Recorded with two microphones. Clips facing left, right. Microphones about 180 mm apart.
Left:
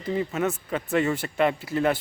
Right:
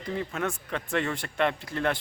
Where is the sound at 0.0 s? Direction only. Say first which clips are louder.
Left 5 dB; 5° left (ahead or behind).